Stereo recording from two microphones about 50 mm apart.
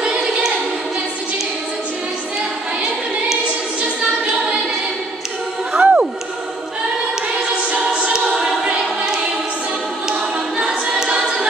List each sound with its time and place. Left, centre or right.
0.0 s choir: centre
5.7 s a sound: right
7.9 s choir: centre